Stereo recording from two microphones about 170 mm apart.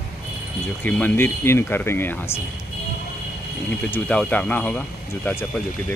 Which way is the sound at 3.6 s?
5° left (ahead or behind).